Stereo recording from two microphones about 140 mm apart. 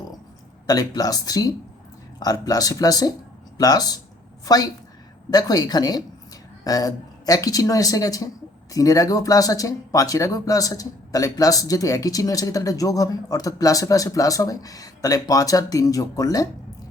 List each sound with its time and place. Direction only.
0.7 s speech: 25° left (ahead or behind)